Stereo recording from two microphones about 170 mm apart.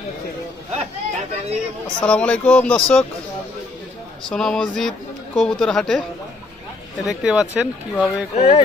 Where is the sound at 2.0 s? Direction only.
5° left (ahead or behind).